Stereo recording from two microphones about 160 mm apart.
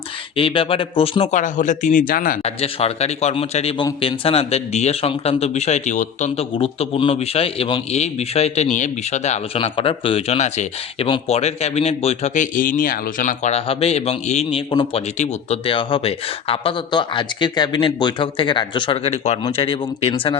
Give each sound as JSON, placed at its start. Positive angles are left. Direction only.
{"t": 0.3, "sound": "speech", "side_deg": 35}
{"t": 2.4, "sound": "speech", "side_deg": 40}